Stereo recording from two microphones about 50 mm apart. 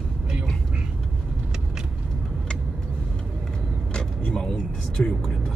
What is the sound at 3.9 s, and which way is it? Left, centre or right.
Vehicle, centre.